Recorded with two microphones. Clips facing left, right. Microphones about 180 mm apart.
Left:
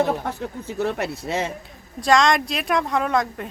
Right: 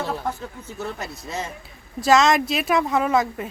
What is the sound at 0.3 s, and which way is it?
Speech, 65° left (ahead or behind).